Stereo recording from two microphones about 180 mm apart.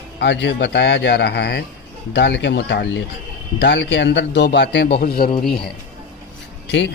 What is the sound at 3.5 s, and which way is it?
Speech, 85° left.